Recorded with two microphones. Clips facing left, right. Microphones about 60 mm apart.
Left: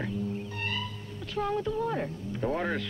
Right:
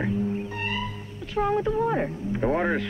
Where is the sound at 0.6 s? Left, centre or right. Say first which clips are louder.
Right 4 dB; centre.